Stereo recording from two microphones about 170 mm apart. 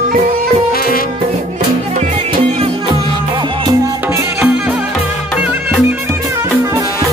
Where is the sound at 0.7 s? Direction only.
60° left (ahead or behind).